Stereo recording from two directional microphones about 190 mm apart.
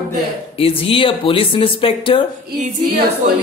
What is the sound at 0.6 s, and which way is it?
Speech, 30° left (ahead or behind).